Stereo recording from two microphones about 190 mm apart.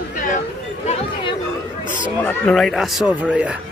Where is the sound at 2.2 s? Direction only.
5° left (ahead or behind).